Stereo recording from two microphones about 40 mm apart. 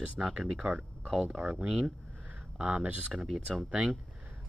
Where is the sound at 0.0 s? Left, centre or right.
Right.